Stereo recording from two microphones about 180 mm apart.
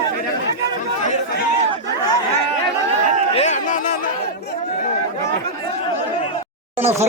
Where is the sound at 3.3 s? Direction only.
40° left (ahead or behind).